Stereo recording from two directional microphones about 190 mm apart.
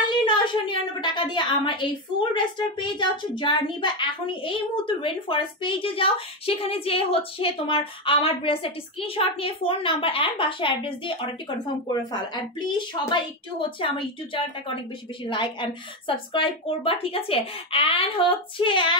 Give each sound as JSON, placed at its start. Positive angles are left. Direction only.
{"t": 0.1, "sound": "a woman's voice", "side_deg": 25}